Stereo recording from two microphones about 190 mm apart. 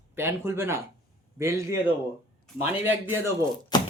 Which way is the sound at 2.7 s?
10° right (ahead or behind).